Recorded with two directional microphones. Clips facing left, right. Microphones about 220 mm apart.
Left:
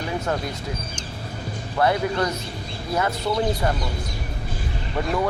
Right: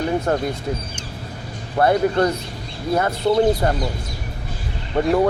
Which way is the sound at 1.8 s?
50° right (ahead or behind).